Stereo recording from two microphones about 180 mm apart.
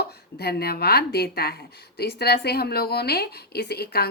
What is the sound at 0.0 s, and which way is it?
A woman's voice, 60° left (ahead or behind).